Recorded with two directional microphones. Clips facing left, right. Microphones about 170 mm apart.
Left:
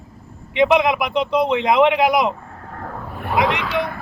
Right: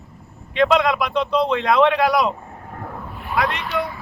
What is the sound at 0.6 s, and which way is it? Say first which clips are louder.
Speech: left 1 dB; 20° left (ahead or behind).